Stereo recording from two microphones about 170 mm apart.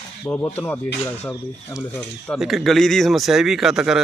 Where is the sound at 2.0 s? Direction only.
Centre (ahead or behind).